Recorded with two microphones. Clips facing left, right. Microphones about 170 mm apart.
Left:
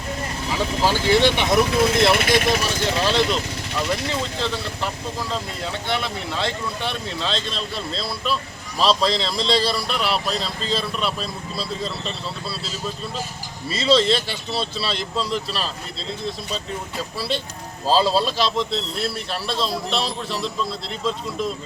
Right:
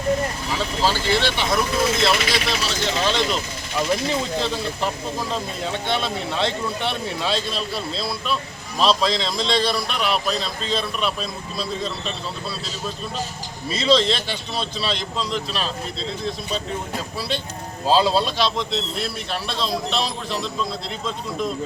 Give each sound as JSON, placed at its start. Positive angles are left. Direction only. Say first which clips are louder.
{"t": 0.8, "sound": "speech", "louder": "left 4 dB", "side_deg": 15}
{"t": 2.0, "sound": "speech", "louder": "left 4 dB", "side_deg": 55}
{"t": 2.6, "sound": "a man's voice", "louder": "left 1 dB", "side_deg": 5}
{"t": 3.8, "sound": "speech", "louder": "right 3 dB", "side_deg": -15}
{"t": 5.9, "sound": "a man's voice", "louder": "right 1 dB", "side_deg": -20}
{"t": 13.7, "sound": "a man's voice", "louder": "left 1 dB", "side_deg": 5}
{"t": 17.2, "sound": "a man's voice", "louder": "left 3 dB", "side_deg": 0}